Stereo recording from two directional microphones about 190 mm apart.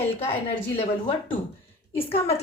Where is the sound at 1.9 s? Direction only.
30° left (ahead or behind).